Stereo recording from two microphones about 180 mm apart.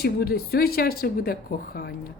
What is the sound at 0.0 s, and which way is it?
A woman's voice, 60° left (ahead or behind).